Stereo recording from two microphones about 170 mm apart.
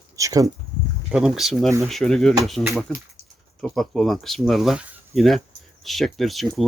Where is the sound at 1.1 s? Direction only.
5° right (ahead or behind).